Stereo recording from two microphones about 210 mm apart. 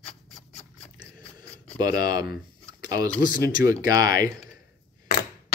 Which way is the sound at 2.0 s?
20° right (ahead or behind).